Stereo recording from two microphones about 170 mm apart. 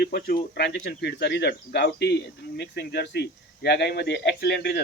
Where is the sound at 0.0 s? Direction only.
65° left (ahead or behind).